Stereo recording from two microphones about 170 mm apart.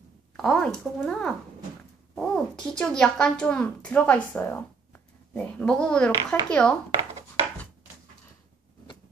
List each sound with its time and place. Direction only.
0.4 s speech: 5° left (ahead or behind)